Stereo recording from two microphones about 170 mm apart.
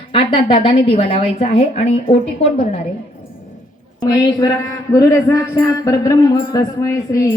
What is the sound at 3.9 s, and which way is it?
A man's voice, 25° left (ahead or behind).